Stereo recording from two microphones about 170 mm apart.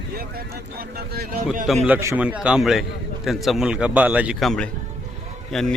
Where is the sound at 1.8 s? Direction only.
15° right (ahead or behind).